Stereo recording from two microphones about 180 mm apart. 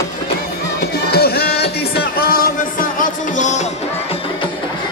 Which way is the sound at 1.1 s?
60° left (ahead or behind).